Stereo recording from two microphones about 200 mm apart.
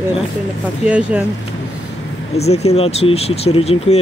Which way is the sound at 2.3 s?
30° left (ahead or behind).